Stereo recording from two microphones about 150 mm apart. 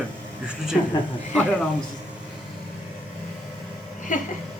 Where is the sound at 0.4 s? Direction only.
5° right (ahead or behind).